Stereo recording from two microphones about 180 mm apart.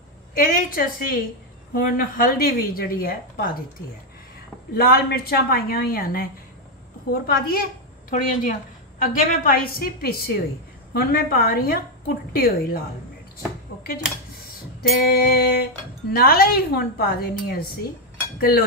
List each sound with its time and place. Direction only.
0.4 s a woman's voice: 50° left (ahead or behind)
4.7 s a woman's voice: 55° left (ahead or behind)
14.8 s a woman's voice: 55° left (ahead or behind)